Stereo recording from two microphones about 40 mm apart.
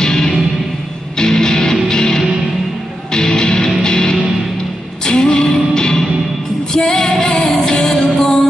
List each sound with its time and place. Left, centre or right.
0.0 s music: centre